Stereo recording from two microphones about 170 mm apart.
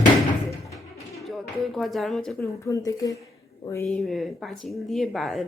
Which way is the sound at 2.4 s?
20° left (ahead or behind).